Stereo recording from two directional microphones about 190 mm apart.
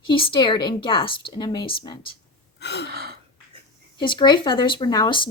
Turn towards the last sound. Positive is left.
turn(degrees=25)  # may be behind; listen again after turning